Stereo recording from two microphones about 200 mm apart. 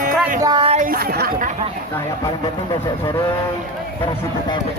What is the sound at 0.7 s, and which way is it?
Speech, 45° right (ahead or behind).